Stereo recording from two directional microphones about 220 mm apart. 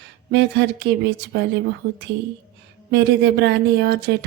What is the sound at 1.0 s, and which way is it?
Speech, 50° right (ahead or behind).